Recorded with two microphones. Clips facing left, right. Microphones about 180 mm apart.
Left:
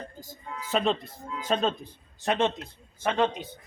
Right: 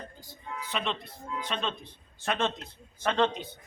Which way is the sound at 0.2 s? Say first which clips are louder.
Left 1 dB; 45° left (ahead or behind).